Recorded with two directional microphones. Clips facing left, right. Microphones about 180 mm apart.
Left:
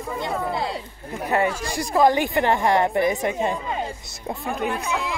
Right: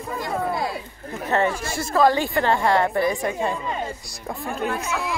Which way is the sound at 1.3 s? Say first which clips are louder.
Even; 10° left (ahead or behind).